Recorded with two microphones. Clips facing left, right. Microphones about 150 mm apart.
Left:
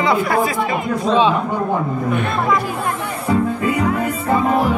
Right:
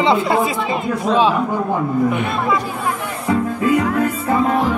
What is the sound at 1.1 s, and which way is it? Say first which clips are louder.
Speech: even; 10° right (ahead or behind).